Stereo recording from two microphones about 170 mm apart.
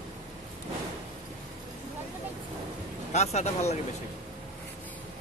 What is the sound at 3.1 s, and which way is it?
Speech, 40° left (ahead or behind).